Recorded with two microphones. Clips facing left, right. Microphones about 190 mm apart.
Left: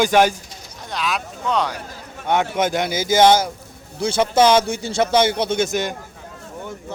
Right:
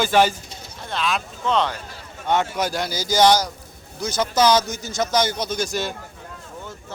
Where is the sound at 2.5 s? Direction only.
20° left (ahead or behind).